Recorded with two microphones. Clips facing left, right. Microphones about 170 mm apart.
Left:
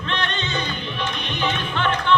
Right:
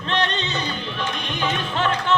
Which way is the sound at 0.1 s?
35° right (ahead or behind).